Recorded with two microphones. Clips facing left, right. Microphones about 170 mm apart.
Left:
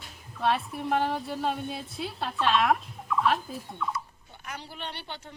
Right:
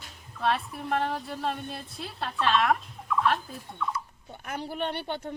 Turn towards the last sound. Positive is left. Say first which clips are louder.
# right 8 dB
turn(degrees=-50)  # may be behind; listen again after turning